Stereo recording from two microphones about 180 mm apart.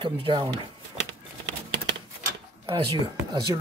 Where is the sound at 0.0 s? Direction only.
30° right (ahead or behind).